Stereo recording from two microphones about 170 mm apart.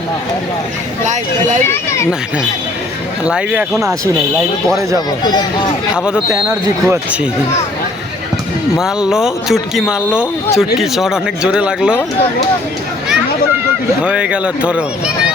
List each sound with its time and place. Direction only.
1.0 s speech: 45° right (ahead or behind)
1.6 s a child's voice: 15° left (ahead or behind)
3.2 s speech: 5° right (ahead or behind)
5.9 s speech: 5° right (ahead or behind)
8.8 s speech: 5° right (ahead or behind)
14.0 s speech: 5° right (ahead or behind)